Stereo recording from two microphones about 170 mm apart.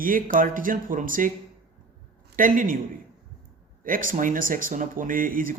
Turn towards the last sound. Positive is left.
turn(degrees=-55)  # may be behind; listen again after turning